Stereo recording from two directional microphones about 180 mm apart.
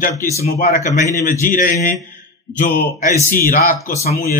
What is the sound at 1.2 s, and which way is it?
Speech, 50° left (ahead or behind).